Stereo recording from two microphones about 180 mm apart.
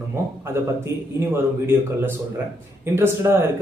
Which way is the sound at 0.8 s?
15° right (ahead or behind).